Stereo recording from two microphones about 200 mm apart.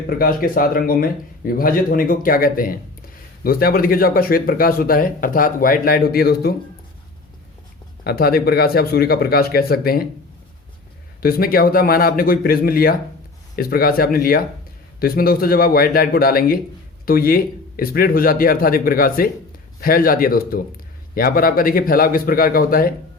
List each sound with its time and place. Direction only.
0.2 s speech: 45° left (ahead or behind)
8.0 s speech: 50° left (ahead or behind)
11.2 s speech: 50° left (ahead or behind)